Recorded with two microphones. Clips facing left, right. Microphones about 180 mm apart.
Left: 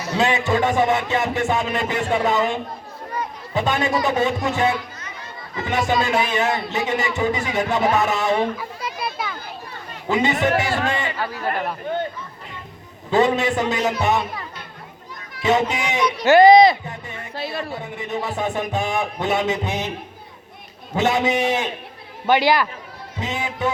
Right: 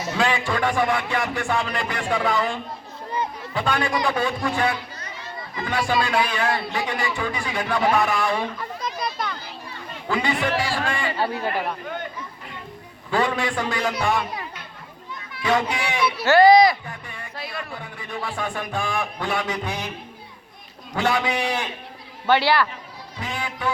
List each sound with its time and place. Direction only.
0.2 s speech: 20° left (ahead or behind)
8.5 s a child's voice: 5° left (ahead or behind)
10.1 s speech: 20° left (ahead or behind)
11.2 s a man's voice: 30° right (ahead or behind)
13.1 s speech: 20° left (ahead or behind)
15.4 s speech: 20° left (ahead or behind)
20.9 s speech: 20° left (ahead or behind)